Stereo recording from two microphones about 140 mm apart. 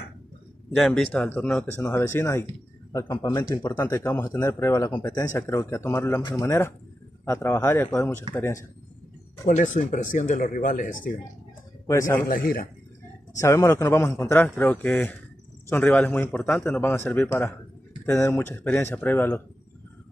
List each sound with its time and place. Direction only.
0.7 s a man's voice: centre (ahead or behind); by 3.9 s 25° left (ahead or behind)
3.9 s a man's voice: 15° left (ahead or behind)
9.5 s speech: 65° left (ahead or behind)
11.9 s speech: 20° left (ahead or behind)
12.3 s a man's voice: 90° left
13.4 s a man's voice: 20° left (ahead or behind)